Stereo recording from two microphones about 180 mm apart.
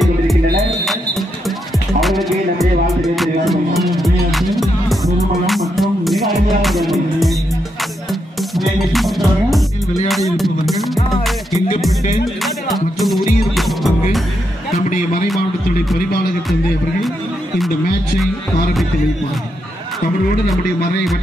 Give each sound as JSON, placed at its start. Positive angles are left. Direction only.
{"t": 0.0, "sound": "music", "side_deg": 0}
{"t": 2.0, "sound": "music", "side_deg": 0}
{"t": 13.6, "sound": "music", "side_deg": 0}
{"t": 18.2, "sound": "music", "side_deg": 0}